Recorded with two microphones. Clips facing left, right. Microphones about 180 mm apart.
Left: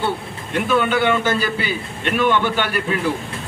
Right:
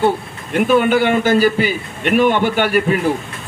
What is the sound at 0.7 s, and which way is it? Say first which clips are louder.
A man's voice: right 4 dB; 50° right (ahead or behind).